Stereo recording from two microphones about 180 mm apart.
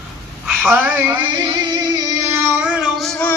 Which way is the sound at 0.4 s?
5° right (ahead or behind).